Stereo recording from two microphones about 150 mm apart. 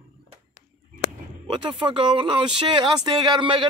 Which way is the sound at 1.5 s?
35° right (ahead or behind).